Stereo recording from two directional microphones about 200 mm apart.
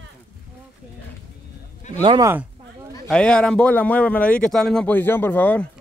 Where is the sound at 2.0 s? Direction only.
25° right (ahead or behind).